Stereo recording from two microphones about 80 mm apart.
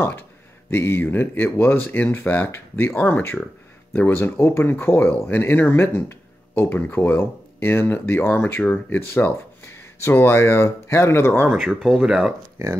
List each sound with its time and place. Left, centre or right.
0.7 s speech: left
11.5 s speech: centre